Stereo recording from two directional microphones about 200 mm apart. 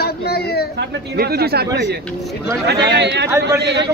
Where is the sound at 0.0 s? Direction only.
50° left (ahead or behind).